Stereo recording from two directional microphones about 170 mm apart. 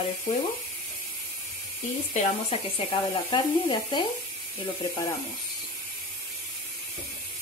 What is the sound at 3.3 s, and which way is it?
Speech, 30° left (ahead or behind).